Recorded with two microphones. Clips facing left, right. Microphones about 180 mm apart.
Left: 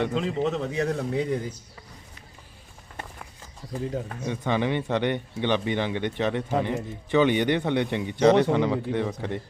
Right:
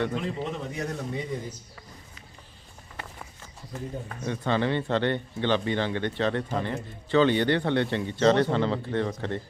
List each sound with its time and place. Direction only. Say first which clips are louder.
0.2 s speech: left 6 dB; 85° left
4.0 s speech: left 6 dB; 90° left
4.3 s a man's voice: even; 15° left (ahead or behind)